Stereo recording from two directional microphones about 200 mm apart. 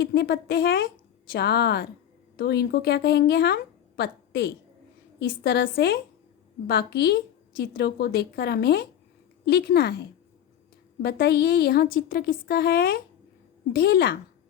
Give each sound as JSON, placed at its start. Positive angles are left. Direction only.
{"t": 0.0, "sound": "a woman's voice", "side_deg": 55}